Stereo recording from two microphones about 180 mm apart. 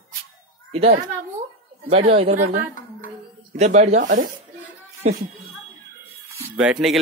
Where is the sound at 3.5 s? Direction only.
40° right (ahead or behind).